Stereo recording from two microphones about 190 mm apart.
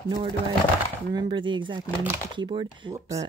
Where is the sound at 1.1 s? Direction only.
25° right (ahead or behind).